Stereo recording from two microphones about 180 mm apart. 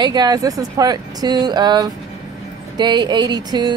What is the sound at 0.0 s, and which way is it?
Speech, 25° right (ahead or behind).